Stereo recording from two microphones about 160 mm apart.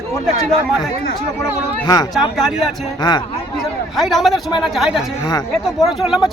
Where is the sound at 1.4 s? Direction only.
25° left (ahead or behind).